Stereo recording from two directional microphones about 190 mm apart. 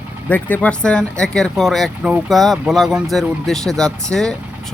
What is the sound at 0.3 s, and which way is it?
Speech, 10° left (ahead or behind).